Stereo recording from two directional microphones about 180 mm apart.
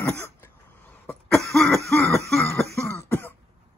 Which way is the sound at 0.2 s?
10° left (ahead or behind).